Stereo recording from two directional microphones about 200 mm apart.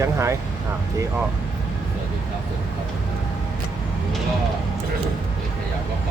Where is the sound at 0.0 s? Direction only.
15° right (ahead or behind).